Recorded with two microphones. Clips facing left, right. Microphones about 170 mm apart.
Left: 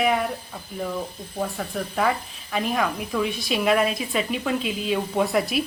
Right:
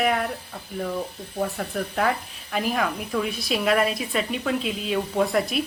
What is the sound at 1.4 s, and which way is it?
Speech, centre (ahead or behind).